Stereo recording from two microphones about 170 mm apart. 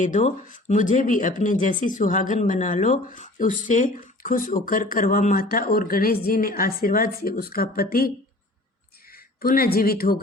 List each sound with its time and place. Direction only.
0.0 s a woman's voice: 45° left (ahead or behind)
9.1 s speech: 60° left (ahead or behind)